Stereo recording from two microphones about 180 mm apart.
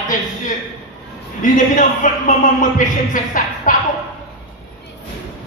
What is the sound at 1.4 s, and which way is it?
A man's voice, 45° left (ahead or behind).